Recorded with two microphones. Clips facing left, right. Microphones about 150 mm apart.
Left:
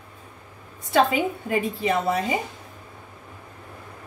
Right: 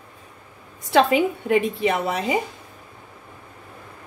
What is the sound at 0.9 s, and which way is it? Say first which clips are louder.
A woman's voice: right 3 dB; 85° right.